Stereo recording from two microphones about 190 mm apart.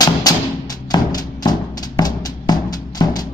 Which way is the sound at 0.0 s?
20° left (ahead or behind).